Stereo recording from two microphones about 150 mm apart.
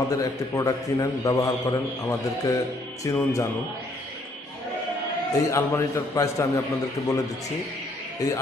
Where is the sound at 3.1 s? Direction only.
20° left (ahead or behind).